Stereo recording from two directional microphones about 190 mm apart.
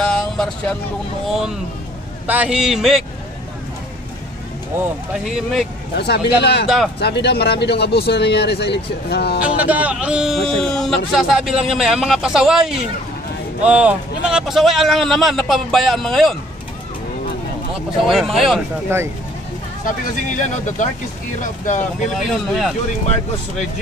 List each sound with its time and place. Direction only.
0.0 s vehicle: 5° left (ahead or behind)
1.3 s a man's voice: centre (ahead or behind)
4.7 s a man's voice: 5° right (ahead or behind)
5.9 s speech: 60° left (ahead or behind)
9.4 s a man's voice: 10° right (ahead or behind)
18.0 s a man's voice: centre (ahead or behind)
18.9 s speech: 15° right (ahead or behind)
19.8 s speech: 40° left (ahead or behind)
22.2 s a man's voice: centre (ahead or behind)